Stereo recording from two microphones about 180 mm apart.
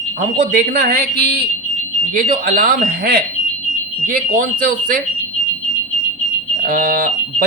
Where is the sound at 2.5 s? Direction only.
50° right (ahead or behind).